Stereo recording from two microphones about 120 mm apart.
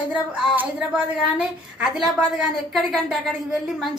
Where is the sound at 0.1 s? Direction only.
10° right (ahead or behind).